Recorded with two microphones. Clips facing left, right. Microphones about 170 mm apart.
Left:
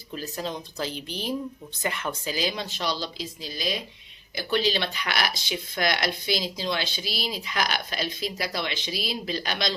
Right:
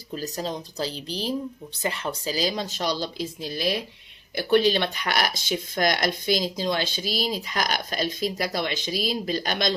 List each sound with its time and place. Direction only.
0.1 s speech: 40° right (ahead or behind)